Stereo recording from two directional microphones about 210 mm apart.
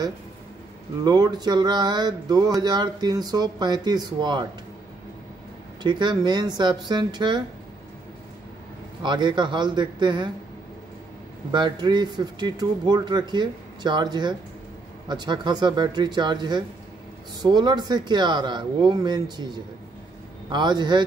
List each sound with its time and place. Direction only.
1.0 s speech: 20° right (ahead or behind)
5.8 s speech: 20° right (ahead or behind)
9.0 s speech: 20° right (ahead or behind)
11.5 s speech: 20° right (ahead or behind)